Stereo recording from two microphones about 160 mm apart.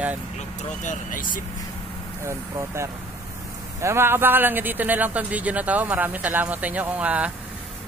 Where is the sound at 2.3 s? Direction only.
15° right (ahead or behind).